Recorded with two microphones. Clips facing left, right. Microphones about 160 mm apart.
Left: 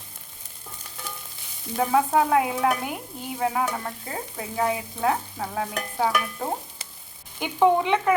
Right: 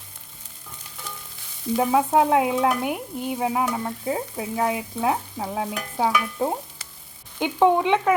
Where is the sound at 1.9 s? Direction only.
20° right (ahead or behind).